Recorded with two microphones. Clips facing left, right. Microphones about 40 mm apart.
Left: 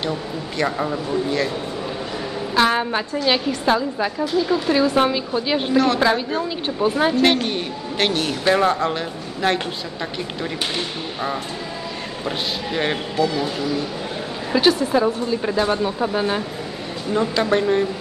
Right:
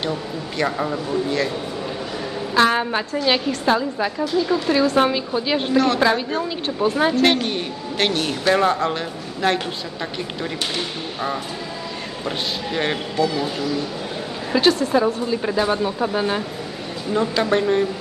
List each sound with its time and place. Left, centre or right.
0.6 s a woman's voice: centre
2.7 s a woman's voice: centre
12.3 s a woman's voice: centre